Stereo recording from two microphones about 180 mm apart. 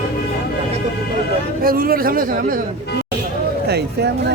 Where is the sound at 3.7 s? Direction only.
65° right (ahead or behind).